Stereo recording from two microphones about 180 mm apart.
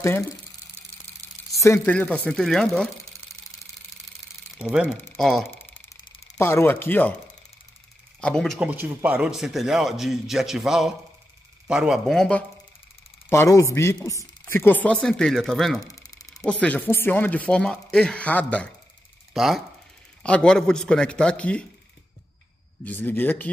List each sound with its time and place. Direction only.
1.6 s speech: 10° left (ahead or behind)
4.6 s speech: 5° right (ahead or behind)
6.3 s speech: 15° left (ahead or behind)
8.2 s a man's voice: 5° left (ahead or behind)
13.3 s a man's voice: 15° left (ahead or behind)
15.8 s a sound: 20° left (ahead or behind)
16.4 s speech: 5° left (ahead or behind)
19.3 s a man's voice: centre (ahead or behind)
22.8 s speech: 10° left (ahead or behind)